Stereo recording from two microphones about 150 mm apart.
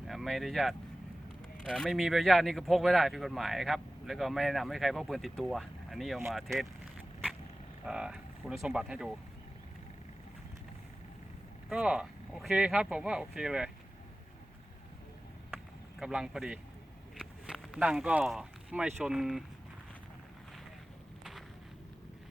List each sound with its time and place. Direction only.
0.1 s speech: centre (ahead or behind)
7.9 s speech: 5° right (ahead or behind)
11.7 s speech: 5° right (ahead or behind)
15.4 s a sound: 5° right (ahead or behind)
17.2 s speech: 5° right (ahead or behind)